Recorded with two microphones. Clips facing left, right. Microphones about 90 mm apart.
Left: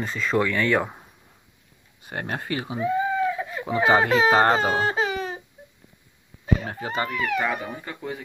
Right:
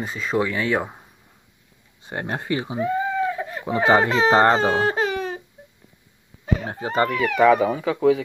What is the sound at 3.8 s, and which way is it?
Speech, 35° right (ahead or behind).